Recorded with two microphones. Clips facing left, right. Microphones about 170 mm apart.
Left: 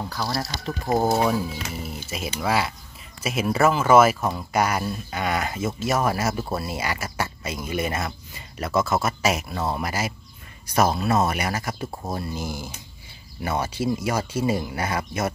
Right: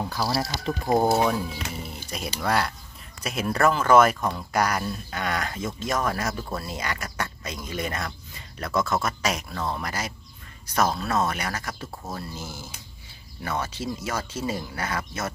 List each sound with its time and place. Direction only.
0.0 s speech: 5° right (ahead or behind); by 11.9 s 10° left (ahead or behind)
11.9 s speech: 30° left (ahead or behind)
12.2 s speech: 15° left (ahead or behind)